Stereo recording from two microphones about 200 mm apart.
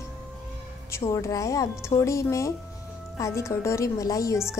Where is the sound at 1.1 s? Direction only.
15° left (ahead or behind).